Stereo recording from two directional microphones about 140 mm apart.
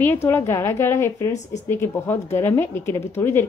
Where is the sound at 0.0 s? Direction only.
15° left (ahead or behind).